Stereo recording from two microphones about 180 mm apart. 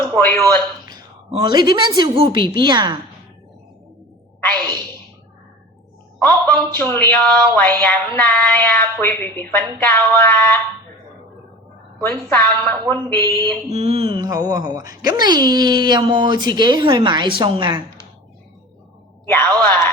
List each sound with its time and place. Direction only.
0.2 s speech: 10° left (ahead or behind)
1.3 s speech: 25° right (ahead or behind)
6.1 s speech: 10° left (ahead or behind)
12.0 s speech: 10° left (ahead or behind)
13.7 s speech: 35° right (ahead or behind)
19.3 s speech: 10° left (ahead or behind)